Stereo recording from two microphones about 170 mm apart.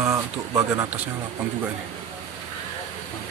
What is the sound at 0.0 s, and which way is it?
Speech, 20° right (ahead or behind).